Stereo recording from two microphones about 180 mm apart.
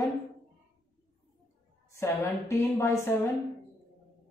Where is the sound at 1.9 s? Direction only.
15° left (ahead or behind).